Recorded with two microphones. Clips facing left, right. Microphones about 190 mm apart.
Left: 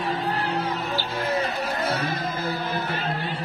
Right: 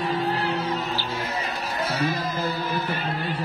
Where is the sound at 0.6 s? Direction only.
55° left (ahead or behind).